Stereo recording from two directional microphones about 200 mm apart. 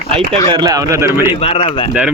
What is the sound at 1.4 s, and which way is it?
Speech, 25° left (ahead or behind).